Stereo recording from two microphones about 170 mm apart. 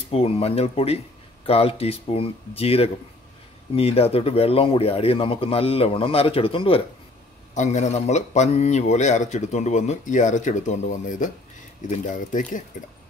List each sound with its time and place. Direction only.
0.1 s speech: 35° left (ahead or behind)
7.5 s speech: 45° left (ahead or behind)